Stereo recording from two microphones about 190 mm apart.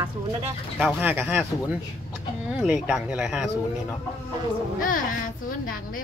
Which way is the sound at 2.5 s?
5° right (ahead or behind).